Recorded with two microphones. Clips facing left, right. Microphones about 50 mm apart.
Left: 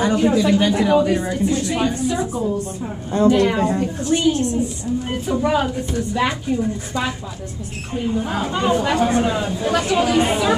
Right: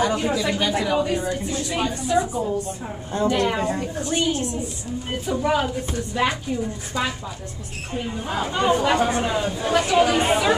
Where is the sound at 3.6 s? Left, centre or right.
Centre.